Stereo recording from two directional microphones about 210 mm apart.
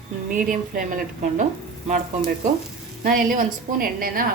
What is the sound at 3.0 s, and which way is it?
A woman's voice, 40° right (ahead or behind).